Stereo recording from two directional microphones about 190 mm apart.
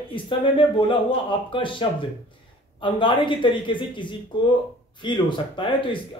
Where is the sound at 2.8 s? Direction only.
25° left (ahead or behind).